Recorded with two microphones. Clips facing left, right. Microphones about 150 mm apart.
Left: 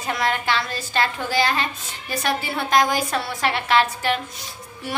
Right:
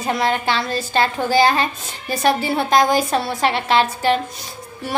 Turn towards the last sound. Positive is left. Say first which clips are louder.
# right 3 dB
turn(degrees=-30)  # may be behind; listen again after turning